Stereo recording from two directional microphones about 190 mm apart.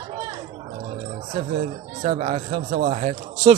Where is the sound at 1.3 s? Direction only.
35° right (ahead or behind).